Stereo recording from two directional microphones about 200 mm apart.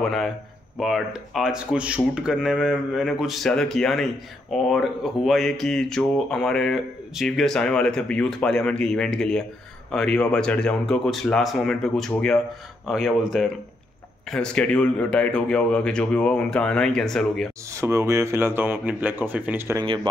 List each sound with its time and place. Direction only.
0.0 s speech: centre (ahead or behind)
17.7 s speech: 15° right (ahead or behind)
19.8 s speech: 20° right (ahead or behind)